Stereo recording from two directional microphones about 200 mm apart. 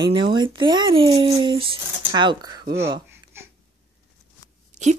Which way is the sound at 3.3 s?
10° right (ahead or behind).